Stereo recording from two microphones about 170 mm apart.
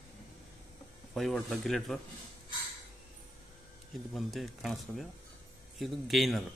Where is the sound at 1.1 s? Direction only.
Centre (ahead or behind).